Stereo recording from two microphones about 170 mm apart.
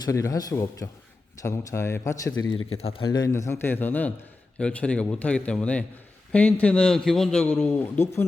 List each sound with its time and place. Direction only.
0.0 s a man's voice: 20° left (ahead or behind)
2.7 s speech: 35° left (ahead or behind)
3.1 s a man's voice: 20° left (ahead or behind)